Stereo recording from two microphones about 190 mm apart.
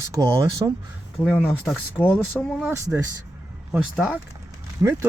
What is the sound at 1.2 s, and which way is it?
Speech, 5° left (ahead or behind).